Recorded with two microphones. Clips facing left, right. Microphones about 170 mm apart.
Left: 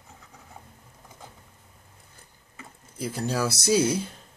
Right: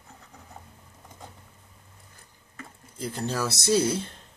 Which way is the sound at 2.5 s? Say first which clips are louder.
Right 1 dB; 10° left (ahead or behind).